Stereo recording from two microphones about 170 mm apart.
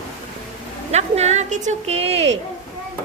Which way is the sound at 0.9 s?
40° right (ahead or behind).